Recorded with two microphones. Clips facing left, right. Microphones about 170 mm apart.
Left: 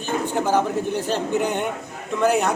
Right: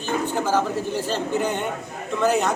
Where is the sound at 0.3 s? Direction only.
15° left (ahead or behind).